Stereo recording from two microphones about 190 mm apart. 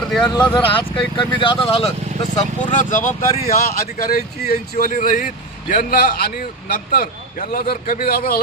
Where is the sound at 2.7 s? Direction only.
45° left (ahead or behind).